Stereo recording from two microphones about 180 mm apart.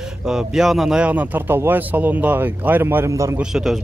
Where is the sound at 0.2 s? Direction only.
5° right (ahead or behind).